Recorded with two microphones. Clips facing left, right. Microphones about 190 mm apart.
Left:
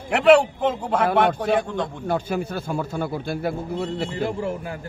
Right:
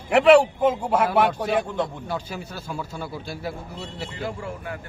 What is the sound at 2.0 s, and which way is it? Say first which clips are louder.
A man's voice: left 7 dB; 55° left (ahead or behind).